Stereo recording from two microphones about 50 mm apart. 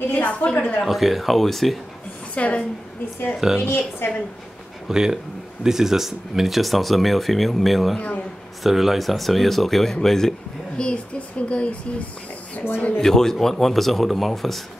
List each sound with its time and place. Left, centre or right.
0.1 s speech: left
0.8 s speech: centre
2.3 s a woman's voice: left
3.3 s speech: centre
3.6 s a woman's voice: left
4.8 s speech: centre
10.8 s speech: left
12.6 s speech: left
13.0 s speech: centre